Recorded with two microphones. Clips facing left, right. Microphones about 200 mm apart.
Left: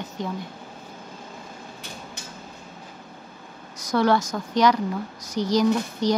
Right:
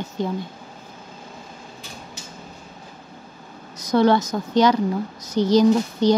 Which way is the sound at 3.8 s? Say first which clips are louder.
Right 4 dB; 20° right (ahead or behind).